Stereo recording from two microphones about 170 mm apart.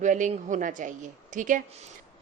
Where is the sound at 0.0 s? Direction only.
45° right (ahead or behind).